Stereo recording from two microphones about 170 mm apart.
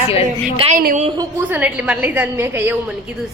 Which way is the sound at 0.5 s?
35° right (ahead or behind).